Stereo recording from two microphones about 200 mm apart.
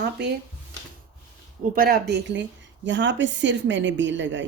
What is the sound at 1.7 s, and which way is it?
A woman's voice, 50° right (ahead or behind).